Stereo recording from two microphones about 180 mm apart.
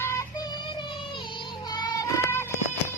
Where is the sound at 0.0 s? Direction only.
15° left (ahead or behind).